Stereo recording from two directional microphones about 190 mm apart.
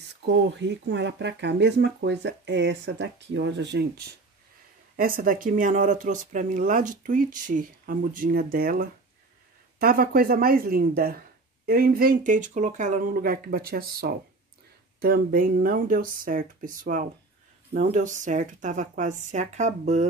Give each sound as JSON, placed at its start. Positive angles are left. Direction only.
{"t": 0.2, "sound": "speech", "side_deg": -70}
{"t": 4.9, "sound": "speech", "side_deg": -45}